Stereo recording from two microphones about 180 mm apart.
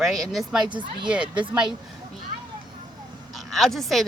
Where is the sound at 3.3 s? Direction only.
Centre (ahead or behind).